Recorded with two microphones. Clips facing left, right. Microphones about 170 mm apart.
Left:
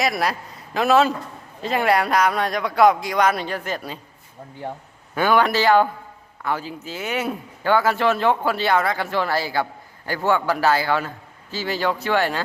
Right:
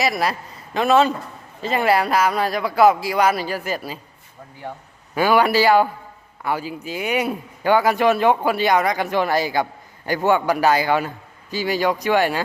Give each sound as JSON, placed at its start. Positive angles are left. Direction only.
{"t": 0.0, "sound": "speech", "side_deg": 0}
{"t": 5.1, "sound": "a man's voice", "side_deg": -10}